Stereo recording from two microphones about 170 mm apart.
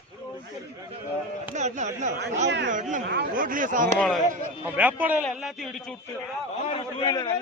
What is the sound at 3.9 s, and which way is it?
Speech, centre (ahead or behind).